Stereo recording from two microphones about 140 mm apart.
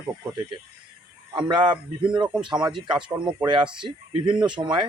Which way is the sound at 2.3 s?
5° right (ahead or behind).